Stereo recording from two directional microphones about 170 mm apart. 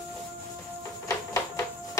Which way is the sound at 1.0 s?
20° left (ahead or behind).